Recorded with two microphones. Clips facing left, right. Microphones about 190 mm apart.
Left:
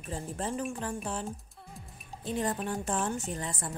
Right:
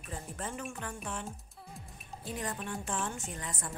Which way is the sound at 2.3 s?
30° left (ahead or behind).